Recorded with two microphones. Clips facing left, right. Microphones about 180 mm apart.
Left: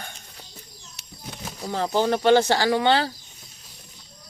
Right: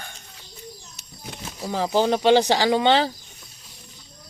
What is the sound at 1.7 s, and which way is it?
Speech, 10° right (ahead or behind).